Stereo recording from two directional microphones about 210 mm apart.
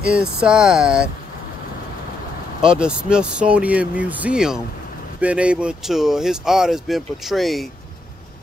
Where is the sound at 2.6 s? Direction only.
5° right (ahead or behind).